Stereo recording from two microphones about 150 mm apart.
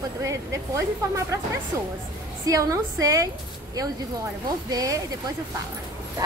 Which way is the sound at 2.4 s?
20° right (ahead or behind).